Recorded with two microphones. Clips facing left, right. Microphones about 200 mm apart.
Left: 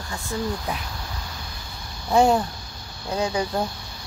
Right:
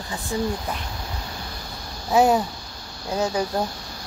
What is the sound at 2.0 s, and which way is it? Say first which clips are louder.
Speech: even; 5° right (ahead or behind).